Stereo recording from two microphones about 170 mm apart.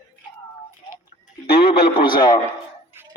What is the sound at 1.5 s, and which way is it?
Speech, 65° left (ahead or behind).